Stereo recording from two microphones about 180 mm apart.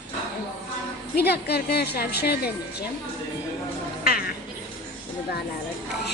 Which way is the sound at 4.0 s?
60° left (ahead or behind).